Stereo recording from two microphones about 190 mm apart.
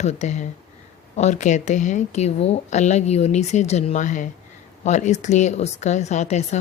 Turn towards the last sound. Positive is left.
turn(degrees=35)  # may be behind; listen again after turning